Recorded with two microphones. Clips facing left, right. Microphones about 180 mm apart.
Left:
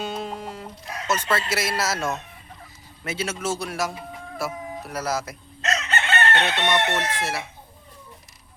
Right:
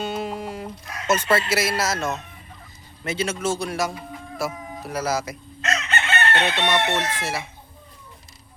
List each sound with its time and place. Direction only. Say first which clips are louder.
0.0 s chicken: right 3 dB; 5° right (ahead or behind)
1.3 s speech: right 4 dB; 5° right (ahead or behind)
5.6 s chicken: even; 40° left (ahead or behind)
6.4 s speech: right 1 dB; 5° right (ahead or behind)